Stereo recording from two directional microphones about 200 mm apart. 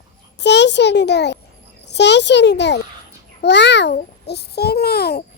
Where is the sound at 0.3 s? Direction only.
60° left (ahead or behind).